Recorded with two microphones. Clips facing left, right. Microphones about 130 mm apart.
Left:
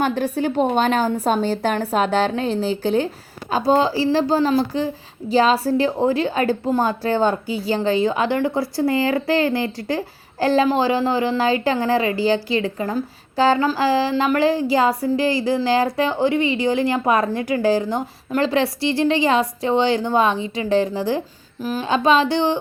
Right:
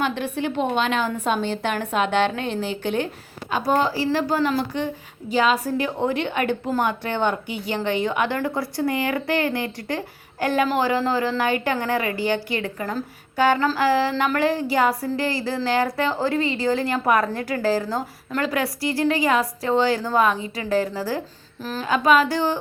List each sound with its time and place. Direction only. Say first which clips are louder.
0.0 s a woman's voice: left 4 dB; 40° left (ahead or behind); by 21.8 s 15° left (ahead or behind)
21.8 s a woman's voice: left 1 dB; 25° left (ahead or behind)